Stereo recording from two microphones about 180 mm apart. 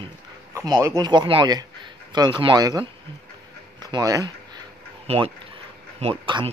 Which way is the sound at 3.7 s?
20° right (ahead or behind).